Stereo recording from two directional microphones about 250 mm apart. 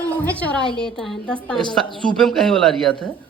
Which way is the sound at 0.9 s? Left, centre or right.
Centre.